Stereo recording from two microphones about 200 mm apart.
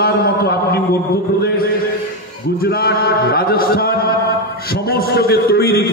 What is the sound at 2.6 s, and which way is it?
A man's voice, 50° left (ahead or behind).